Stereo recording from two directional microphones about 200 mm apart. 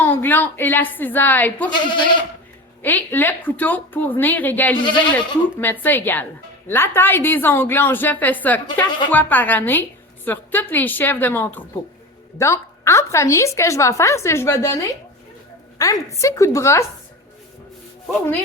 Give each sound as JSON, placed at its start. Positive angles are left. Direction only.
{"t": 0.0, "sound": "a woman's voice", "side_deg": 10}
{"t": 1.7, "sound": "speech", "side_deg": 25}
{"t": 2.8, "sound": "a woman's voice", "side_deg": 10}